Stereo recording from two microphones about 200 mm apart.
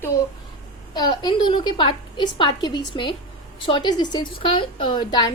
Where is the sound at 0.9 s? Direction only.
20° left (ahead or behind).